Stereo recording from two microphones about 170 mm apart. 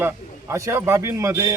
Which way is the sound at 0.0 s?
15° right (ahead or behind).